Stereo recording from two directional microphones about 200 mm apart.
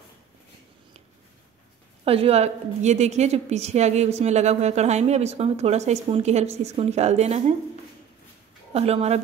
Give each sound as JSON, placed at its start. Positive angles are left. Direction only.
{"t": 2.0, "sound": "a woman's voice", "side_deg": -30}
{"t": 8.7, "sound": "a woman's voice", "side_deg": -30}